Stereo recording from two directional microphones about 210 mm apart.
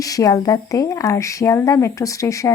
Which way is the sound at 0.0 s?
15° left (ahead or behind).